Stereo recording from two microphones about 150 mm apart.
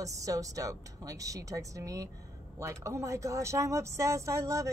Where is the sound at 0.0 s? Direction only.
20° right (ahead or behind).